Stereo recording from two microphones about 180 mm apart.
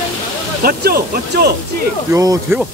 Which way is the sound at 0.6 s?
55° right (ahead or behind).